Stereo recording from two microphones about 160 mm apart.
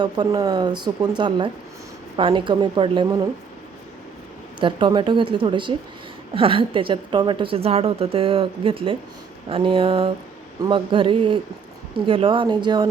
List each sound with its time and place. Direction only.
0.0 s a woman's voice: 25° right (ahead or behind)
4.6 s a woman's voice: 30° right (ahead or behind)